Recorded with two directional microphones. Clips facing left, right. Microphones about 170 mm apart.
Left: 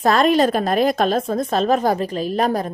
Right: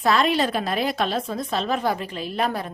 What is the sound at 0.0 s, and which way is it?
A woman's voice, 45° left (ahead or behind).